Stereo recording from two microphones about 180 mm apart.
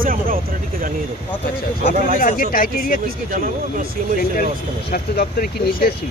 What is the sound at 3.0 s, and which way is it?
Speech, 50° right (ahead or behind).